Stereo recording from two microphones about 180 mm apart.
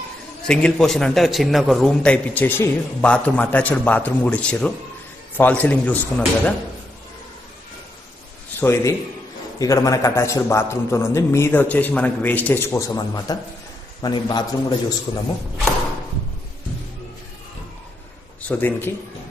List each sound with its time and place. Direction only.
0.5 s a man's voice: 5° left (ahead or behind)
8.5 s a man's voice: 15° left (ahead or behind)
18.5 s a man's voice: 10° left (ahead or behind)